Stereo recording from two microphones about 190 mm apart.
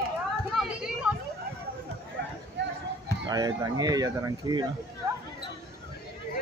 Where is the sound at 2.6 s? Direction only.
65° right (ahead or behind).